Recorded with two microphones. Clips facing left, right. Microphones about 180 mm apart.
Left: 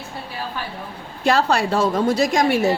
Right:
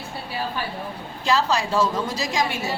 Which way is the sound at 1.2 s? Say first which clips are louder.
Left 4 dB; 55° left (ahead or behind).